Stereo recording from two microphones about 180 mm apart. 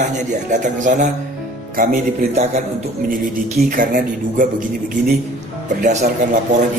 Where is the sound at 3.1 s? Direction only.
50° right (ahead or behind).